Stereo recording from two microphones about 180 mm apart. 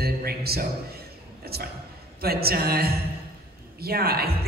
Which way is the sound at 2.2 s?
60° right (ahead or behind).